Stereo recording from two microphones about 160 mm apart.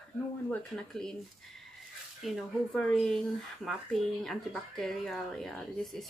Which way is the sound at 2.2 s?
Centre (ahead or behind).